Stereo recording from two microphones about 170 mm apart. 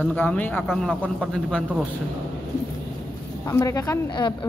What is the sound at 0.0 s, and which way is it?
Speech, 10° left (ahead or behind).